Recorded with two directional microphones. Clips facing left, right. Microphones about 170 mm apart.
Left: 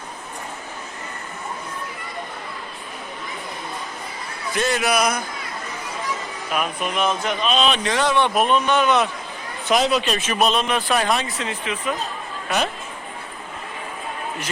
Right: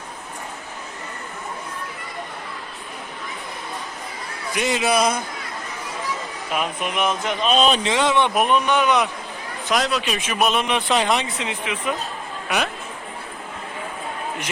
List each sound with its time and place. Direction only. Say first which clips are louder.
4.5 s speech: right 1 dB; 20° right (ahead or behind)
6.5 s speech: left 1 dB; 20° right (ahead or behind)
7.5 s speech: right 3 dB; 40° right (ahead or behind)
7.9 s speech: even; 20° right (ahead or behind)
9.6 s speech: left 3 dB; centre (ahead or behind); by 11.9 s 15° right (ahead or behind)